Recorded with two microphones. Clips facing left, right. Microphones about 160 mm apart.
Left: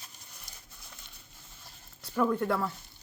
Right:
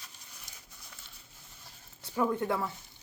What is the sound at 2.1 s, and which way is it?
Speech, 15° right (ahead or behind).